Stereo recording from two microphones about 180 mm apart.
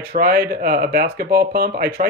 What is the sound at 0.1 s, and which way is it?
Speech, 55° right (ahead or behind).